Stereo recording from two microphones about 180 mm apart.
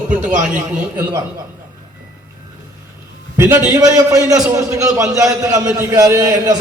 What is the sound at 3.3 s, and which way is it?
A man's voice, 15° right (ahead or behind).